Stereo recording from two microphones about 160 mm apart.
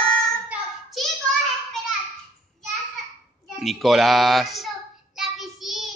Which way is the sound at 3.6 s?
Centre (ahead or behind).